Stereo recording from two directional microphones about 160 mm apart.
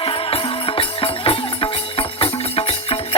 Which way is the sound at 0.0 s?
35° left (ahead or behind).